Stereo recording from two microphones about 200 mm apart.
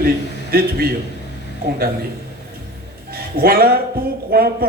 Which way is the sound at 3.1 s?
50° right (ahead or behind).